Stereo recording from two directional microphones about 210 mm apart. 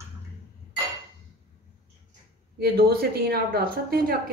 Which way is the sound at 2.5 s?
50° right (ahead or behind).